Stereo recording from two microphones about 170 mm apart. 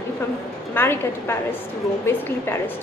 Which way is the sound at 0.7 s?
15° left (ahead or behind).